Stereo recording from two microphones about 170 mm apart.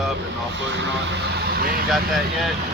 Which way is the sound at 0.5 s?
90° right.